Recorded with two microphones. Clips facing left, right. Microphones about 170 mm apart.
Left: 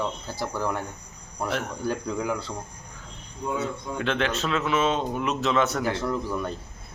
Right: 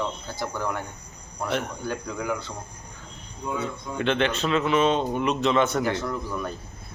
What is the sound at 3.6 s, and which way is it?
Speech, centre (ahead or behind).